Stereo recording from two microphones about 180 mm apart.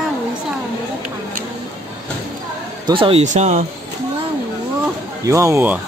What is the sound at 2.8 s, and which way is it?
Speech, 30° right (ahead or behind).